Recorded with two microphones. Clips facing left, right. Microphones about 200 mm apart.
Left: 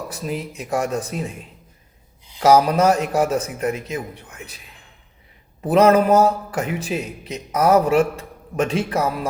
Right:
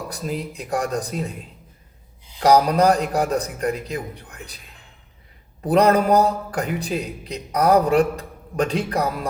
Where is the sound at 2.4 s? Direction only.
5° left (ahead or behind).